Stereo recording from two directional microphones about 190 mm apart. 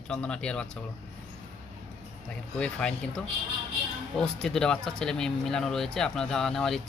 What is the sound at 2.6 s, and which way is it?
Speech, 5° left (ahead or behind).